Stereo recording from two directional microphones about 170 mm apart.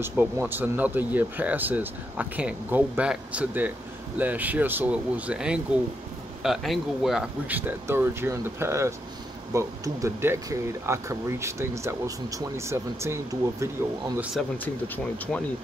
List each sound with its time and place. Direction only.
0.0 s speech: 10° right (ahead or behind)